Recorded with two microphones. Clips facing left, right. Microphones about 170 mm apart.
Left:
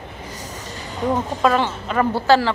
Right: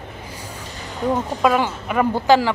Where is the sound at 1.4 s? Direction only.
10° right (ahead or behind).